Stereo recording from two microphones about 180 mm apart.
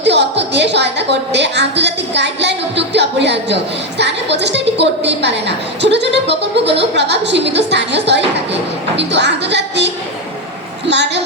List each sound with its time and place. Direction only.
0.0 s a woman's voice: 70° right (ahead or behind)
10.8 s a woman's voice: 70° right (ahead or behind)